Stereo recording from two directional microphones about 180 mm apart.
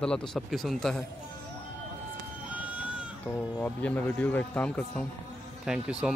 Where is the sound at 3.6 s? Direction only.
10° left (ahead or behind).